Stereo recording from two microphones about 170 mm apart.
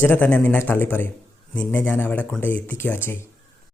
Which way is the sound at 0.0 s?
10° left (ahead or behind).